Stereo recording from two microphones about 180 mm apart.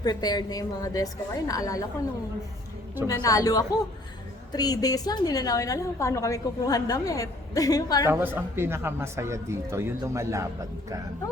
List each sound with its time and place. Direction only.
0.0 s a woman's voice: 20° left (ahead or behind)
3.1 s a woman's voice: 20° left (ahead or behind)
8.0 s speech: 10° right (ahead or behind)